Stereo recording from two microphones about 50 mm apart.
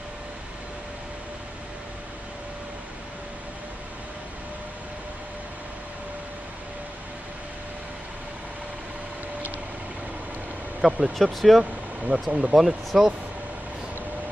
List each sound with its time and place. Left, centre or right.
10.8 s speech: centre
12.1 s speech: right
12.5 s speech: centre